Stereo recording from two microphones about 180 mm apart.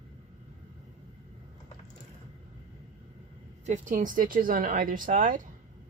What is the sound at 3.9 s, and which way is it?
A woman's voice, 50° right (ahead or behind).